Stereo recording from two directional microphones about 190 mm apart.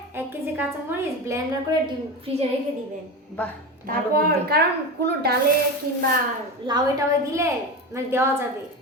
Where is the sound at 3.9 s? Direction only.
50° right (ahead or behind).